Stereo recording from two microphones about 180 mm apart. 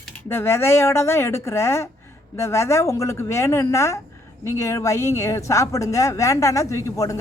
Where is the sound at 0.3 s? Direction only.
15° left (ahead or behind).